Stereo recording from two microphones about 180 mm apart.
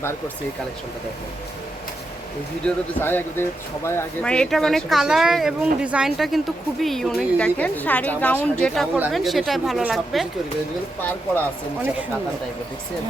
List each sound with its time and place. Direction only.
2.6 s speech: 10° left (ahead or behind)